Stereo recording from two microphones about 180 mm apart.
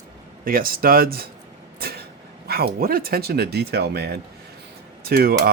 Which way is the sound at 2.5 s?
55° right (ahead or behind).